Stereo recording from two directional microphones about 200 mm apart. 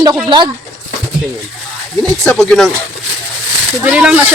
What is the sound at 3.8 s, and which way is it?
Speech, 5° right (ahead or behind).